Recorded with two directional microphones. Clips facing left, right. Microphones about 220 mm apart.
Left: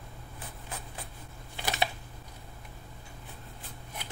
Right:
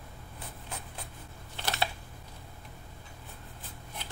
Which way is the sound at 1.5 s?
15° left (ahead or behind).